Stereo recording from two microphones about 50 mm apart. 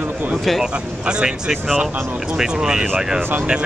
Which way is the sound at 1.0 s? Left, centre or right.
Centre.